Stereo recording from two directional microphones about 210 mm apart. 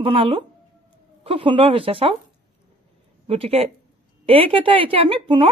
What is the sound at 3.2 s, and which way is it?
Speech, 30° right (ahead or behind).